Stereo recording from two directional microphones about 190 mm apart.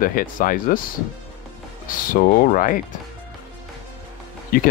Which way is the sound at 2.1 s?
45° left (ahead or behind).